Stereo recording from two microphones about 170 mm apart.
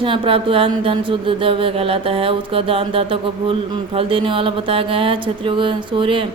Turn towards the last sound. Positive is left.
turn(degrees=-30)  # may be behind; listen again after turning